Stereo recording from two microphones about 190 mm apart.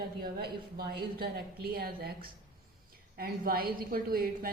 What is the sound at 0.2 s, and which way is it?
A woman's voice, 55° right (ahead or behind).